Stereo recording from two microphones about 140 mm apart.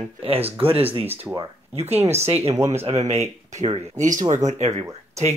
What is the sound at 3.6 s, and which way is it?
Speech, 40° right (ahead or behind).